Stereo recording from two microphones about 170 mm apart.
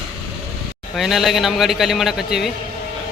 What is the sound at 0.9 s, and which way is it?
A man's voice, centre (ahead or behind).